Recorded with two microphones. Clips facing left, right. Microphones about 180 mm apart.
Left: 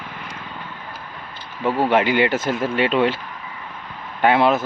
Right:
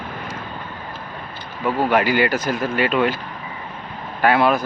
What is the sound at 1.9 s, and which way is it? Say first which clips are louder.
Speech: even; 20° left (ahead or behind).